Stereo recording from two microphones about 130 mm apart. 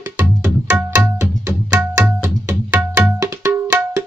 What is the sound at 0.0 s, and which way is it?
Music, 15° right (ahead or behind).